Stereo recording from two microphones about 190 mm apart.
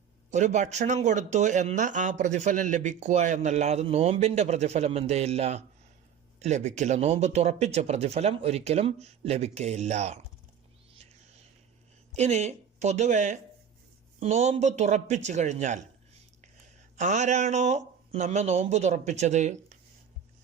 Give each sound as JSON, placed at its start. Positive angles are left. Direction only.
{"t": 0.3, "sound": "speech", "side_deg": -40}
{"t": 10.9, "sound": "music", "side_deg": -35}
{"t": 12.1, "sound": "speech", "side_deg": -35}
{"t": 17.0, "sound": "speech", "side_deg": -40}